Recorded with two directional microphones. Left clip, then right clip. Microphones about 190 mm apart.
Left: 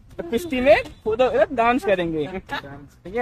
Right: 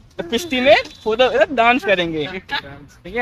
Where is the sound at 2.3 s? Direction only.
55° left (ahead or behind).